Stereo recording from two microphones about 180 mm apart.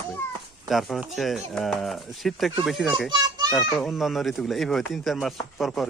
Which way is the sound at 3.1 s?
20° right (ahead or behind).